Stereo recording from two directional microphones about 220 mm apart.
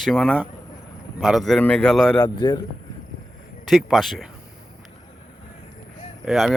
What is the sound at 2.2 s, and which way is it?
Speech, 20° left (ahead or behind).